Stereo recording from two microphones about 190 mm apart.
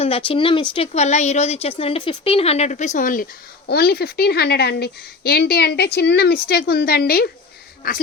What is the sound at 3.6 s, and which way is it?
A woman's voice, 55° left (ahead or behind).